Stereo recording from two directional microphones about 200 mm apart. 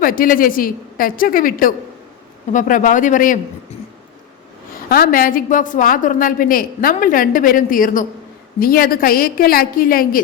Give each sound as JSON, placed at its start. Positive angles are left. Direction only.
{"t": 0.0, "sound": "a woman's voice", "side_deg": 45}
{"t": 4.9, "sound": "a woman's voice", "side_deg": 45}